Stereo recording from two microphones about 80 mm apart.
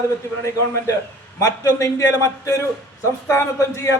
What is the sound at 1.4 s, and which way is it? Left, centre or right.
A man's voice, left.